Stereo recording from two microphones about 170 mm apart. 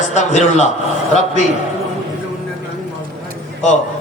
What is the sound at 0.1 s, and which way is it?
Speech, 40° left (ahead or behind).